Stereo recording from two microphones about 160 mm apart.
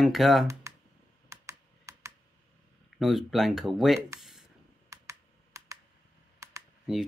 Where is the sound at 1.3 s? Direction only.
20° right (ahead or behind).